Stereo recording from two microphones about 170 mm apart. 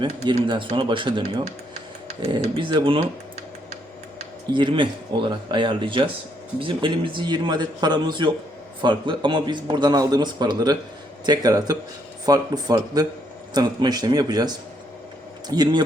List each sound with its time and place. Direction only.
0.0 s a man's voice: 30° right (ahead or behind)
4.5 s a man's voice: 30° right (ahead or behind)